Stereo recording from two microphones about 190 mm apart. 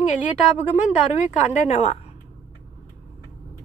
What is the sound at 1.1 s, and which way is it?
Speech, 35° left (ahead or behind).